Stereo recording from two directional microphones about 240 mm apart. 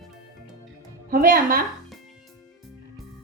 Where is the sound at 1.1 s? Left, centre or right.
Right.